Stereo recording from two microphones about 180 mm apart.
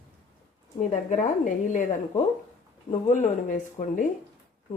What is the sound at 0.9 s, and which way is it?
Speech, 40° left (ahead or behind).